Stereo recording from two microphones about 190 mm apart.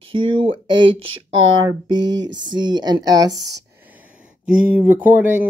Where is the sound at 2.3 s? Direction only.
25° right (ahead or behind).